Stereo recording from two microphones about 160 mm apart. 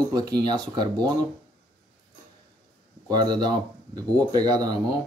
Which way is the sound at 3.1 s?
25° right (ahead or behind).